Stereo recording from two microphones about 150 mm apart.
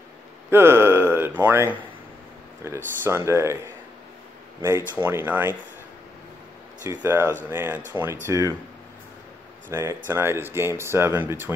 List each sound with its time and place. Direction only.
0.5 s speech: 15° right (ahead or behind)
4.6 s speech: 15° right (ahead or behind)
6.9 s speech: 15° right (ahead or behind)
9.7 s speech: 15° right (ahead or behind)